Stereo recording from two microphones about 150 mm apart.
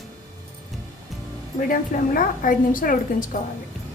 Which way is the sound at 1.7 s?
65° left (ahead or behind).